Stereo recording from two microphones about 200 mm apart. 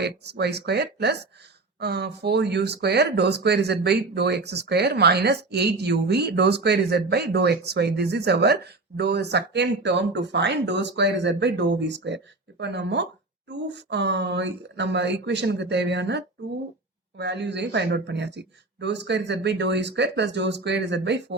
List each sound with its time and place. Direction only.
0.0 s speech: 55° right (ahead or behind)